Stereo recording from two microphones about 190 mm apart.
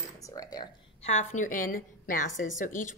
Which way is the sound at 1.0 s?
40° left (ahead or behind).